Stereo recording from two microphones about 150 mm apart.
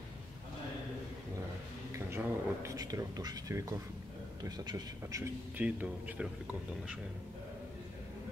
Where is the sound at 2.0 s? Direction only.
15° right (ahead or behind).